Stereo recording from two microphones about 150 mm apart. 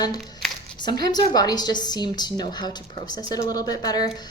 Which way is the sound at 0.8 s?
25° left (ahead or behind).